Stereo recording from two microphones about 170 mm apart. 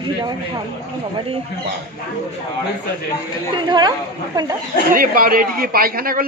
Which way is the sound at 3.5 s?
25° right (ahead or behind).